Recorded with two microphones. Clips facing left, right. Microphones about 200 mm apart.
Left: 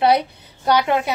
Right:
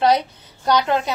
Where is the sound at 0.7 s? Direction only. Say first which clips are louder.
Left 1 dB; 10° left (ahead or behind).